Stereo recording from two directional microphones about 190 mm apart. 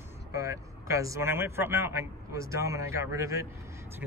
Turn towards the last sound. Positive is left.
turn(degrees=-15)  # may be behind; listen again after turning